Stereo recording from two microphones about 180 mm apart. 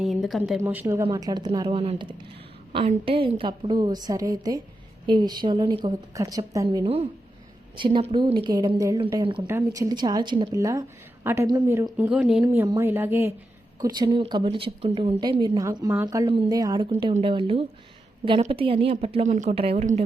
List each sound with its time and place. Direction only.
0.0 s speech: centre (ahead or behind)
0.6 s a woman's voice: 10° right (ahead or behind)
9.5 s a woman's voice: 15° right (ahead or behind)
16.9 s a woman's voice: 35° right (ahead or behind)